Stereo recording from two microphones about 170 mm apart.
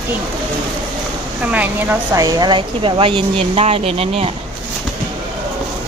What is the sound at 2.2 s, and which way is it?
Speech, 20° right (ahead or behind).